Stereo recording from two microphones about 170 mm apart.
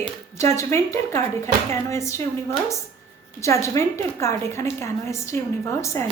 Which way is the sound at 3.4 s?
15° left (ahead or behind).